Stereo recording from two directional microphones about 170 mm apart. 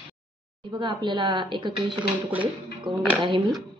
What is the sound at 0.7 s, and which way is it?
A woman's voice, 25° right (ahead or behind).